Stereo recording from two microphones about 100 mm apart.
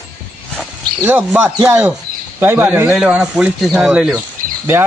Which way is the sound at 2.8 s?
10° right (ahead or behind).